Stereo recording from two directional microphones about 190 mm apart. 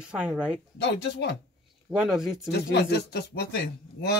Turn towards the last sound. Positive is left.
turn(degrees=55)  # may be behind; listen again after turning